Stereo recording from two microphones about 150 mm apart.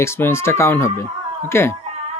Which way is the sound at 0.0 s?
15° left (ahead or behind).